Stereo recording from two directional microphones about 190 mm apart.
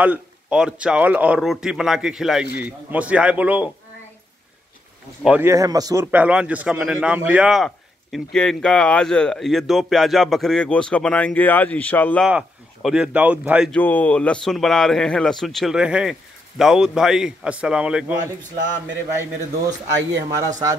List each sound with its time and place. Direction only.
0.0 s a man's voice: 5° right (ahead or behind)
5.2 s a man's voice: 10° right (ahead or behind)
6.1 s a man's voice: 5° right (ahead or behind)
12.3 s a man's voice: 5° right (ahead or behind)
13.7 s a man's voice: 10° left (ahead or behind)
20.3 s a man's voice: 20° right (ahead or behind)